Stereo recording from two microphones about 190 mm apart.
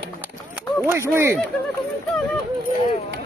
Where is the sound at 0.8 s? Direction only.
15° right (ahead or behind).